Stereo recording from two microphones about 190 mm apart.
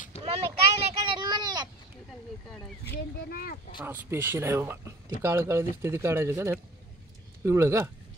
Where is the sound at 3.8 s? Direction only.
10° right (ahead or behind).